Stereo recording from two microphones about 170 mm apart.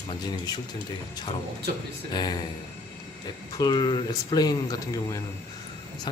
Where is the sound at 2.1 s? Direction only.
25° left (ahead or behind).